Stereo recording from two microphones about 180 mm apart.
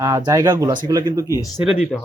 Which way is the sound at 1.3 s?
20° left (ahead or behind).